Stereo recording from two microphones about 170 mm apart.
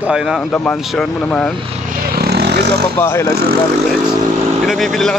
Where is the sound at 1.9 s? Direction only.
60° right (ahead or behind).